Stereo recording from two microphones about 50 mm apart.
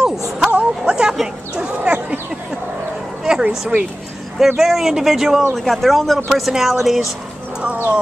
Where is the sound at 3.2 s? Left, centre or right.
Centre.